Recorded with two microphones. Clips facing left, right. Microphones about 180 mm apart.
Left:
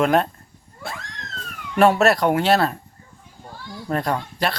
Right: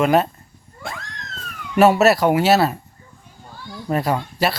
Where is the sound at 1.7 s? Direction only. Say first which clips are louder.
Right 2 dB; 5° right (ahead or behind).